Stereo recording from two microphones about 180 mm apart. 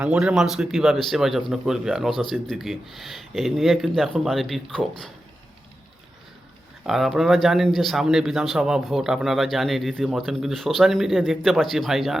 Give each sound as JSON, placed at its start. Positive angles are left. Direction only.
{"t": 0.0, "sound": "speech", "side_deg": -5}
{"t": 6.8, "sound": "speech", "side_deg": 0}